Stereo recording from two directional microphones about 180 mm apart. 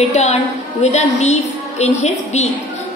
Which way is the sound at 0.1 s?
40° left (ahead or behind).